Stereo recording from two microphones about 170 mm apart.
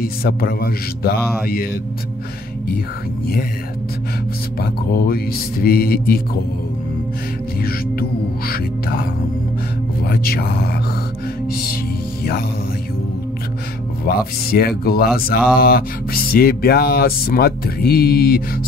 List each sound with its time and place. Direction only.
0.0 s speech: 60° left (ahead or behind)
4.6 s speech: 60° left (ahead or behind)
7.6 s speech: 60° left (ahead or behind)
10.0 s speech: 60° left (ahead or behind)
14.0 s speech: 60° left (ahead or behind)